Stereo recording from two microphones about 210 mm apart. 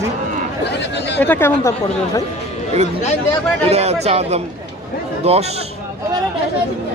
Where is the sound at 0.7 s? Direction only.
55° left (ahead or behind).